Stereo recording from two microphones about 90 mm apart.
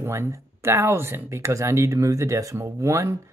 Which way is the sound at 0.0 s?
25° right (ahead or behind).